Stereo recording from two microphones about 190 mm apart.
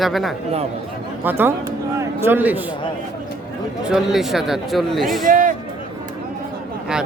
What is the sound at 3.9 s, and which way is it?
A man's voice, centre (ahead or behind).